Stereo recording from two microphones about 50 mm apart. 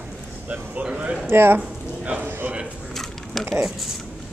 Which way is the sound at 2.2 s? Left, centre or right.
Right.